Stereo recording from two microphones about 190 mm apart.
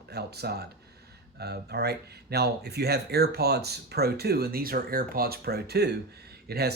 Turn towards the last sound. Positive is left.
turn(degrees=-55)  # may be behind; listen again after turning